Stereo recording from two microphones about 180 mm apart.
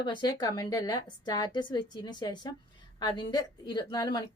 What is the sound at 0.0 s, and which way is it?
A woman's voice, 25° left (ahead or behind).